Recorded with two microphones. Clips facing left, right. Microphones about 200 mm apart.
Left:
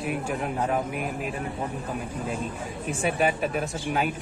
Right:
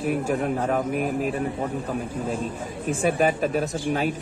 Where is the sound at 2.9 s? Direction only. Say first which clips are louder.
Right 4 dB; 40° right (ahead or behind).